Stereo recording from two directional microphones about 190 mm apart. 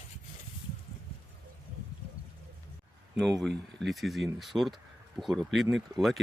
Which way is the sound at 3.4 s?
Centre (ahead or behind).